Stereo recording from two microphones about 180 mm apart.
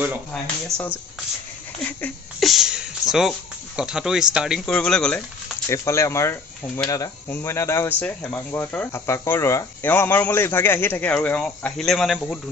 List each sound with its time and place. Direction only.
0.7 s speech: 15° right (ahead or behind)
1.8 s speech: 10° left (ahead or behind)
5.7 s speech: 15° left (ahead or behind)